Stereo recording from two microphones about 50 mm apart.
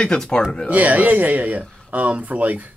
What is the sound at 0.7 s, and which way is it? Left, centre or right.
Speech, right.